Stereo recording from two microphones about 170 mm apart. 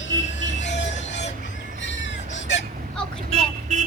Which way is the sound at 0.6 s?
90° left.